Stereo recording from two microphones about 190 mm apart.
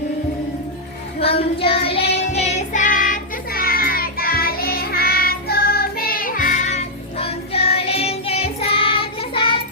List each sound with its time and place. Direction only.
1.2 s child singing: 30° left (ahead or behind)